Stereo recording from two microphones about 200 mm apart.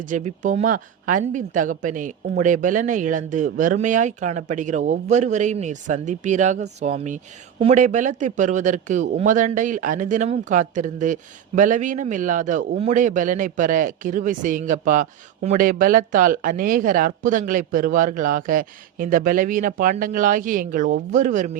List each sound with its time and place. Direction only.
0.0 s a woman's voice: 40° right (ahead or behind)